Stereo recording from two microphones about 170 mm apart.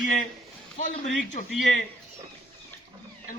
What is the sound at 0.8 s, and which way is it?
Speech, 45° left (ahead or behind).